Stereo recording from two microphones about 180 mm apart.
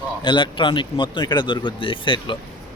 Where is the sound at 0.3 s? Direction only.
25° left (ahead or behind).